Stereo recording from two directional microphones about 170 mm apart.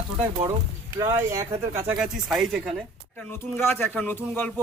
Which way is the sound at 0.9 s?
20° right (ahead or behind).